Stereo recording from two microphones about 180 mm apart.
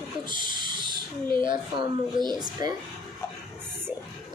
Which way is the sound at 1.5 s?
25° right (ahead or behind).